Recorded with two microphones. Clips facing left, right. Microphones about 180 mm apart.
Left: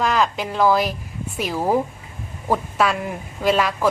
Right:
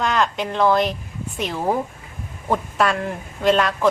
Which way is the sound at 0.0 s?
5° left (ahead or behind).